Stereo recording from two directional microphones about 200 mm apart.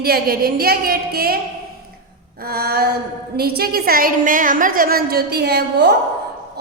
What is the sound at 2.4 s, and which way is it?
A woman's voice, 50° right (ahead or behind).